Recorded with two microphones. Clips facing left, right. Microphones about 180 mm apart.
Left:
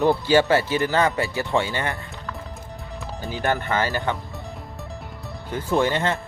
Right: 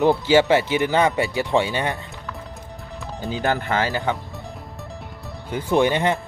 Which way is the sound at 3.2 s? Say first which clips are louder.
Right 1 dB; 20° right (ahead or behind).